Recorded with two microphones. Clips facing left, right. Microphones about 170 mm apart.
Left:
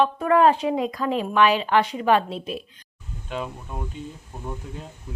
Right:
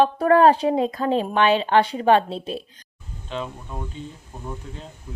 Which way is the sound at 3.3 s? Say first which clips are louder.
Even; 10° left (ahead or behind).